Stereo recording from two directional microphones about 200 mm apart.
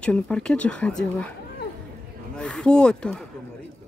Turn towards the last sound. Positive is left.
turn(degrees=5)  # may be behind; listen again after turning